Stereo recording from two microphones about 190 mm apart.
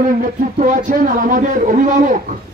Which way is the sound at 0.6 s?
45° right (ahead or behind).